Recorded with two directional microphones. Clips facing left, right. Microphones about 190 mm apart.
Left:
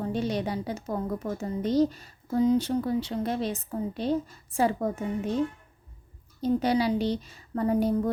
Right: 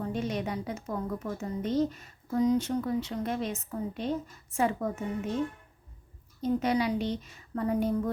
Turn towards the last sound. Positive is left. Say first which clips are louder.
# left 3 dB
turn(degrees=35)  # may be behind; listen again after turning